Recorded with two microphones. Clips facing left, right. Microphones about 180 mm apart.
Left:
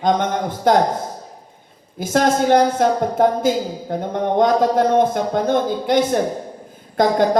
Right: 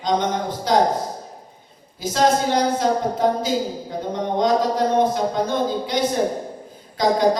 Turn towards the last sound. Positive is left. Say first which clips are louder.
# left 3 dB
turn(degrees=50)  # may be behind; listen again after turning